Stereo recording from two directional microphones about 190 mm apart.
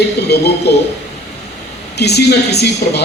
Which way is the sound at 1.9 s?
60° left (ahead or behind).